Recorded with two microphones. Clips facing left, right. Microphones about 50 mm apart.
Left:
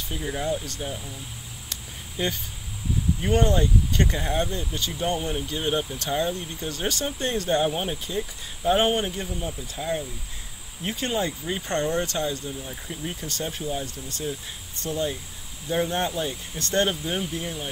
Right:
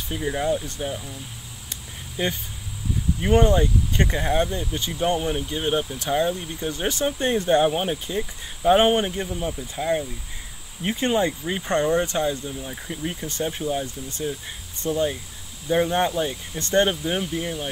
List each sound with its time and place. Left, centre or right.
0.1 s speech: centre
2.2 s speech: centre